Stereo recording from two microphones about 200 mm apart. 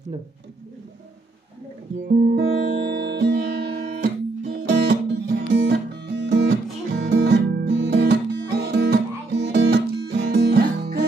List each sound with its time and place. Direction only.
2.0 s music: 50° right (ahead or behind)
8.5 s guitar: 55° right (ahead or behind)